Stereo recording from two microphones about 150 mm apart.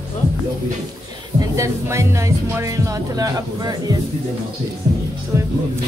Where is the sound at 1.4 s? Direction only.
20° right (ahead or behind).